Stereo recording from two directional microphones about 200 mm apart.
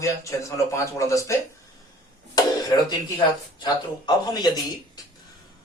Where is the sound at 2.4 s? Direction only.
20° left (ahead or behind).